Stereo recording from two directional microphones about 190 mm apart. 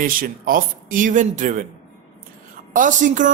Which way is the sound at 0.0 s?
50° right (ahead or behind).